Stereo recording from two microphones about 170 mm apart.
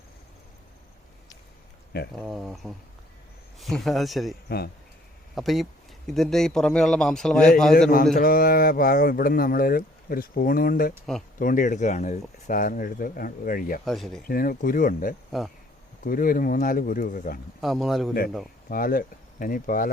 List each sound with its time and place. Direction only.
2.2 s a man's voice: centre (ahead or behind)
4.4 s speech: 65° left (ahead or behind)
5.3 s a man's voice: centre (ahead or behind)
8.1 s speech: 60° left (ahead or behind)
13.8 s a man's voice: centre (ahead or behind)
14.3 s speech: 55° left (ahead or behind)
17.6 s a man's voice: centre (ahead or behind)
18.7 s speech: 55° left (ahead or behind)